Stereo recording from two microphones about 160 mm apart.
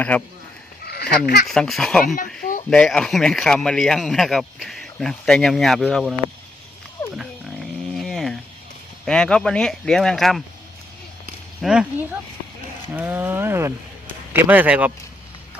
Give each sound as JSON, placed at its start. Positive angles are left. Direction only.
{"t": 0.1, "sound": "speech", "side_deg": 10}
{"t": 2.1, "sound": "speech", "side_deg": 55}
{"t": 2.6, "sound": "speech", "side_deg": 5}
{"t": 7.9, "sound": "a sound", "side_deg": 0}
{"t": 9.0, "sound": "speech", "side_deg": 5}
{"t": 11.6, "sound": "speech", "side_deg": -5}